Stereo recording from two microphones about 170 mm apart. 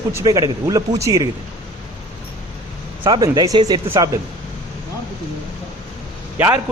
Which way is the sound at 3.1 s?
25° right (ahead or behind).